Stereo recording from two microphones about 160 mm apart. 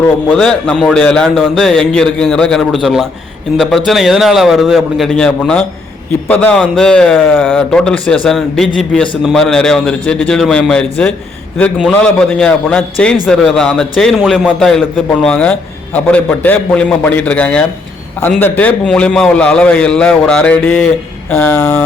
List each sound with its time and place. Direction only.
0.3 s a man's voice: 5° left (ahead or behind)